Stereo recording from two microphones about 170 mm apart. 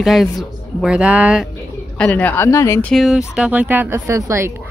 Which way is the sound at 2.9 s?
Centre (ahead or behind).